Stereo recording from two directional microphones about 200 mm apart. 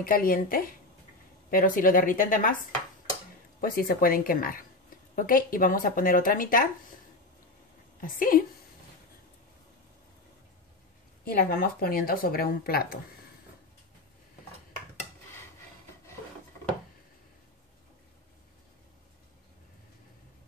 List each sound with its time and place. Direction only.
0.0 s speech: 45° left (ahead or behind)
3.6 s speech: 45° left (ahead or behind)
8.0 s speech: 45° left (ahead or behind)
11.2 s speech: 45° left (ahead or behind)